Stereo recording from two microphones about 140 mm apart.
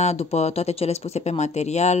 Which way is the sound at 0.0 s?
50° left (ahead or behind).